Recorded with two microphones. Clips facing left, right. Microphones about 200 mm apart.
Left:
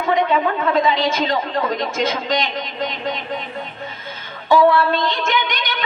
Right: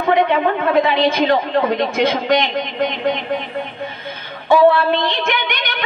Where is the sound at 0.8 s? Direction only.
60° right (ahead or behind).